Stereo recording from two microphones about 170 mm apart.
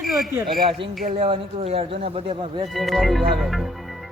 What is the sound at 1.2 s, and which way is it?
Speech, 35° right (ahead or behind).